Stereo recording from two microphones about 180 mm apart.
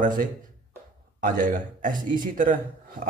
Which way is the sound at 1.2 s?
45° right (ahead or behind).